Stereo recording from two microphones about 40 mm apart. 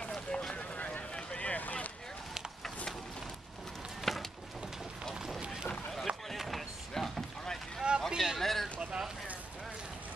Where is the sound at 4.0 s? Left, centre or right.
Centre.